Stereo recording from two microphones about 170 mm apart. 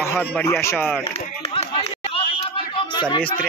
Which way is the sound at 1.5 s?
35° left (ahead or behind).